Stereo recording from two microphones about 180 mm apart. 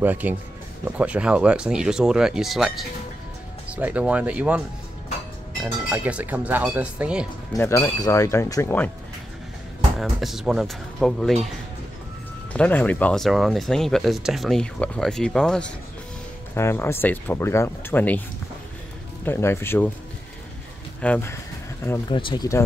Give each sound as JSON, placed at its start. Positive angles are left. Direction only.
{"t": 0.0, "sound": "speech", "side_deg": -10}
{"t": 5.9, "sound": "speech", "side_deg": -5}
{"t": 7.5, "sound": "speech", "side_deg": 15}
{"t": 9.9, "sound": "speech", "side_deg": 0}
{"t": 12.5, "sound": "speech", "side_deg": 10}
{"t": 16.5, "sound": "speech", "side_deg": 15}
{"t": 19.2, "sound": "speech", "side_deg": 15}
{"t": 21.0, "sound": "speech", "side_deg": 10}
{"t": 22.1, "sound": "speech", "side_deg": 25}